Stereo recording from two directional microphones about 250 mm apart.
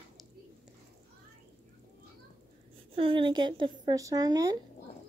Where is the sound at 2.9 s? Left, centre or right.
Right.